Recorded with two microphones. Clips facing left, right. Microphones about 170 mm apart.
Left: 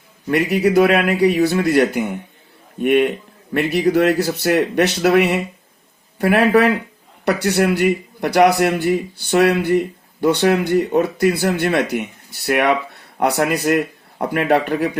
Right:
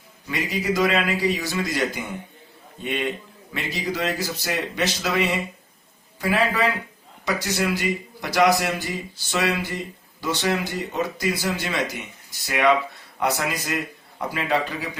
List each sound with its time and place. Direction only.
0.3 s a man's voice: 60° left (ahead or behind)